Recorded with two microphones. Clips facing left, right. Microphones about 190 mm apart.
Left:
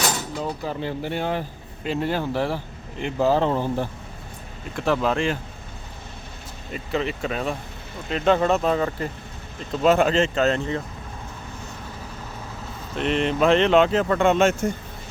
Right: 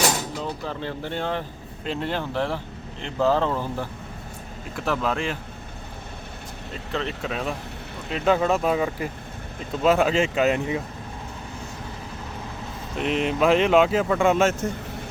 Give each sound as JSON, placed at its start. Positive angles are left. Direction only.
{"t": 0.6, "sound": "speech", "side_deg": 15}
{"t": 4.8, "sound": "speech", "side_deg": 0}
{"t": 6.9, "sound": "speech", "side_deg": 5}
{"t": 13.0, "sound": "speech", "side_deg": -5}